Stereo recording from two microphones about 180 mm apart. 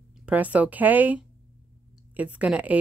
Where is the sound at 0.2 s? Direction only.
10° right (ahead or behind).